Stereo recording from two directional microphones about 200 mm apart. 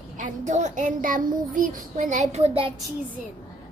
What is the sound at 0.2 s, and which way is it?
A child's voice, 40° right (ahead or behind).